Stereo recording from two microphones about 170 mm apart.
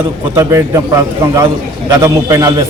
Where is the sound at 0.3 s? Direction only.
20° right (ahead or behind).